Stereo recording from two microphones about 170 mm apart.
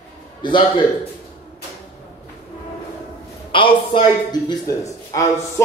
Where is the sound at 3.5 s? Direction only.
30° left (ahead or behind).